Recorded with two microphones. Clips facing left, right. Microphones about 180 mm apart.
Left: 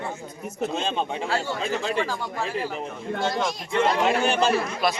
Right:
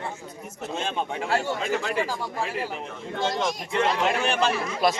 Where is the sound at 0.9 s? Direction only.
25° left (ahead or behind).